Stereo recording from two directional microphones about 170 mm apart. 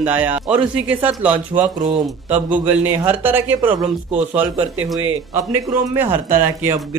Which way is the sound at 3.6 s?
25° right (ahead or behind).